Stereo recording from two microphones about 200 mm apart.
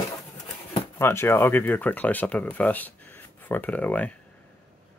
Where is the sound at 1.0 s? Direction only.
10° left (ahead or behind).